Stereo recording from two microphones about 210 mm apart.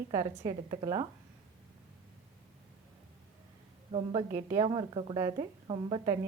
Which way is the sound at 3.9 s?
20° right (ahead or behind).